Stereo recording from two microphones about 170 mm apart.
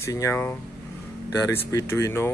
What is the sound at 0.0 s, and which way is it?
Speech, 15° left (ahead or behind).